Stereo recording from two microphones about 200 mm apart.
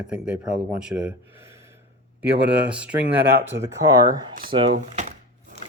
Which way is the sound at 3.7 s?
20° right (ahead or behind).